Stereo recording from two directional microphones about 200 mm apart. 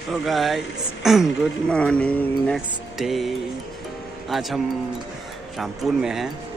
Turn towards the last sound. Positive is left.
turn(degrees=0)  # may be behind; listen again after turning